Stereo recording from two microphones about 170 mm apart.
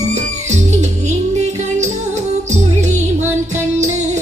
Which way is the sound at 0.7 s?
40° right (ahead or behind).